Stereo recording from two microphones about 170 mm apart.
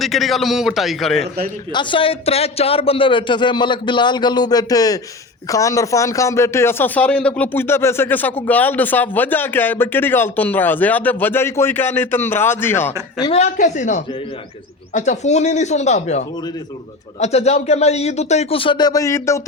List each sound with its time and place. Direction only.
0.0 s a man's voice: centre (ahead or behind)
1.7 s a man's voice: 30° left (ahead or behind); by 12.9 s 15° left (ahead or behind)
13.3 s speech: 45° left (ahead or behind); by 19.4 s 15° left (ahead or behind)